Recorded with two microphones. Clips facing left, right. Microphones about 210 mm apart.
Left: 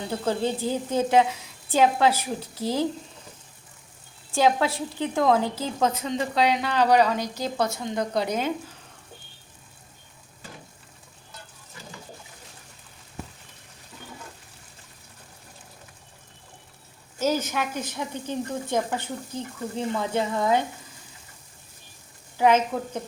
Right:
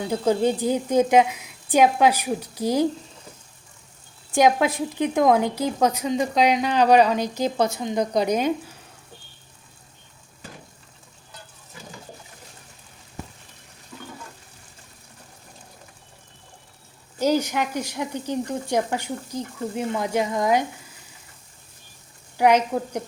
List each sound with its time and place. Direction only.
0.1 s a woman's voice: 15° right (ahead or behind)
4.3 s a woman's voice: 15° right (ahead or behind)
17.2 s a woman's voice: 15° right (ahead or behind)
22.4 s a woman's voice: 15° right (ahead or behind)